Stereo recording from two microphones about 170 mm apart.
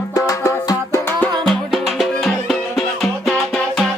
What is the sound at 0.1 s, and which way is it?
Music, 20° left (ahead or behind).